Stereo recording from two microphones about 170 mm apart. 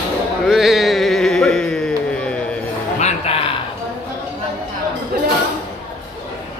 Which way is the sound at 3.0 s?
40° left (ahead or behind).